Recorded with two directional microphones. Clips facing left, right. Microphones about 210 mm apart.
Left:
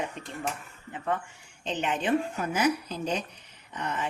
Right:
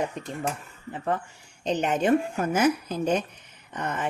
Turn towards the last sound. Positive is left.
turn(degrees=-50)  # may be behind; listen again after turning